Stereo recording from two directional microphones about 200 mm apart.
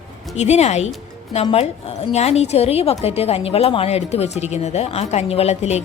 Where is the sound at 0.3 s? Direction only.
35° left (ahead or behind).